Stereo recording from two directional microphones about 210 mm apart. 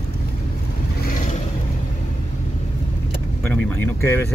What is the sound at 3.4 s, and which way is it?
Speech, 10° left (ahead or behind).